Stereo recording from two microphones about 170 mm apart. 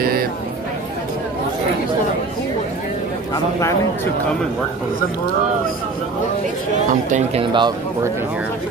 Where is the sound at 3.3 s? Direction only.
15° left (ahead or behind).